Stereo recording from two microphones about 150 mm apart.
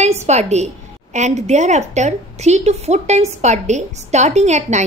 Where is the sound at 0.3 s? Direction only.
50° right (ahead or behind).